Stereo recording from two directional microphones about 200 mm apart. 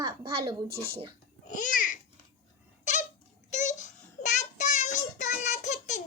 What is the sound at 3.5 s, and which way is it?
Child singing, 35° left (ahead or behind).